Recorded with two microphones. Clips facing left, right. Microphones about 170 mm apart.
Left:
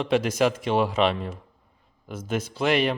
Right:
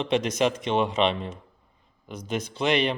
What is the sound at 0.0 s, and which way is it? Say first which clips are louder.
A man's voice: left 2 dB; 5° left (ahead or behind).